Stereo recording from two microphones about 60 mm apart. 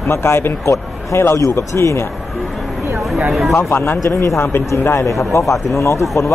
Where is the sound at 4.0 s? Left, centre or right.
Left.